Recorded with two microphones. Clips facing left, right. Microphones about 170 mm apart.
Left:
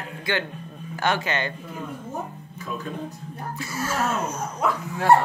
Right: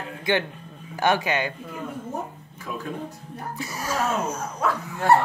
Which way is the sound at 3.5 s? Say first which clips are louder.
Left 1 dB; 15° right (ahead or behind).